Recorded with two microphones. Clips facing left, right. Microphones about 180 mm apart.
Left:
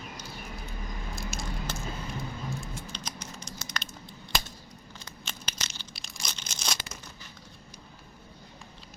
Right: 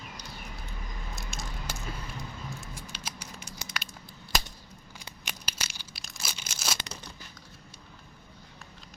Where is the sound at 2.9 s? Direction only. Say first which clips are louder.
Left 2 dB; 5° right (ahead or behind).